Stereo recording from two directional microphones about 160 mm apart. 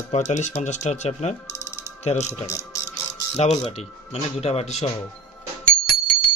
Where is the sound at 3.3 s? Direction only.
40° left (ahead or behind).